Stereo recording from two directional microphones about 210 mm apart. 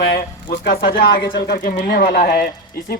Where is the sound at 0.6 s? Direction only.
45° left (ahead or behind).